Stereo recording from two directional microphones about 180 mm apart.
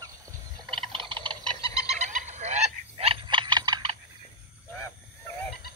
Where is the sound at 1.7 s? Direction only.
35° right (ahead or behind).